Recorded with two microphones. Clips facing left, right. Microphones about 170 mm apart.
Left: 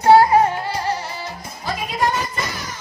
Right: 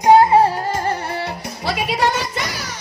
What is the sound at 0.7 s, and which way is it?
Music, 50° right (ahead or behind).